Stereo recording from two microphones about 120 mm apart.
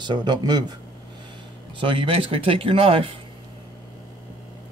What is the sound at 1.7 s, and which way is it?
Speech, 45° right (ahead or behind).